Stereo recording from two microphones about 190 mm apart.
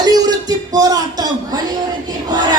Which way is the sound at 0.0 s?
20° right (ahead or behind).